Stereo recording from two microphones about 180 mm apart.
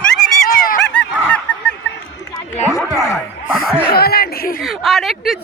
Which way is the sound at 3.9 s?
60° left (ahead or behind).